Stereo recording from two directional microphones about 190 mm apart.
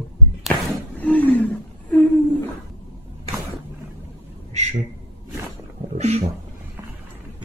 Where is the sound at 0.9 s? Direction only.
5° left (ahead or behind).